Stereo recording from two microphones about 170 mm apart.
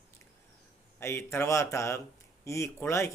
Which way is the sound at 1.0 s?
15° left (ahead or behind).